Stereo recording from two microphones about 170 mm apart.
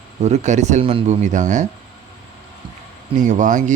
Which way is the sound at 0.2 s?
40° right (ahead or behind).